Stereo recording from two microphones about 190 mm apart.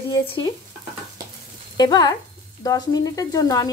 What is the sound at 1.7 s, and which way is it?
Speech, 20° left (ahead or behind).